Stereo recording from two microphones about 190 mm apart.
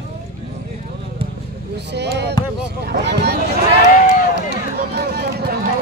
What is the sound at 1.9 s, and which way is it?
A man's voice, 60° right (ahead or behind).